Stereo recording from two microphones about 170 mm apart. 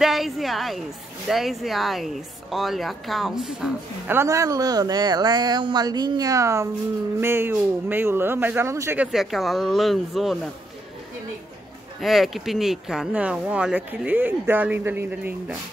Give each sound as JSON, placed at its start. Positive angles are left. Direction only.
{"t": 0.0, "sound": "a woman's voice", "side_deg": 0}
{"t": 4.2, "sound": "speech", "side_deg": -20}
{"t": 12.0, "sound": "speech", "side_deg": 0}